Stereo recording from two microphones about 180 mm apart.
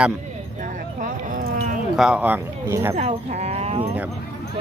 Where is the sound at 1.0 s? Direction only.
45° right (ahead or behind).